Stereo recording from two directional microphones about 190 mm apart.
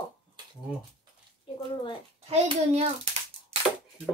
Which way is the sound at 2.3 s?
35° right (ahead or behind).